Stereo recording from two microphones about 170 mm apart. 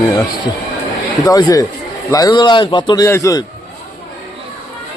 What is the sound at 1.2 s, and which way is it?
A man's voice, 20° left (ahead or behind).